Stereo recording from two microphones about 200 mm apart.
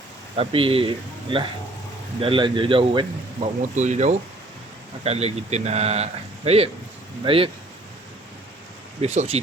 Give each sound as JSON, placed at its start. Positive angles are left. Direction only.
{"t": 0.3, "sound": "speech", "side_deg": -25}
{"t": 3.8, "sound": "speech", "side_deg": -35}
{"t": 9.0, "sound": "speech", "side_deg": -30}